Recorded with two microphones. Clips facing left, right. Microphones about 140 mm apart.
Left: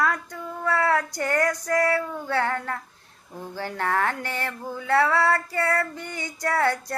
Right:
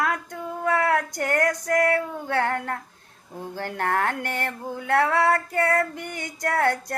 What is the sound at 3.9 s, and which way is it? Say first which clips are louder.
Female singing: even; 50° right (ahead or behind).